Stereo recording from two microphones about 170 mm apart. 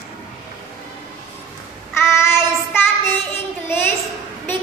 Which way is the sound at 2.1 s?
15° left (ahead or behind).